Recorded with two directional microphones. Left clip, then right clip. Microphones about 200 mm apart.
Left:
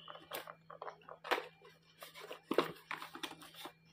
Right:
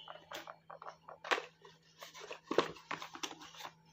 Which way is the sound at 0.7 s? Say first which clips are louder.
Left 4 dB; 5° right (ahead or behind).